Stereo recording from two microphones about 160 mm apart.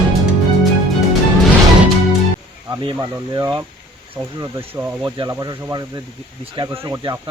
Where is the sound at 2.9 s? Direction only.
10° right (ahead or behind).